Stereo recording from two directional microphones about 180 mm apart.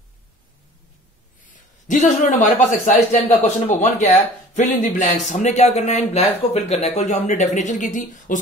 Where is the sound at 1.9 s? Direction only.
45° left (ahead or behind).